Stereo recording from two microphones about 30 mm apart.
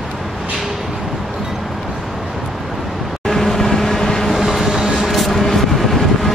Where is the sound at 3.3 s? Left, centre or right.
Centre.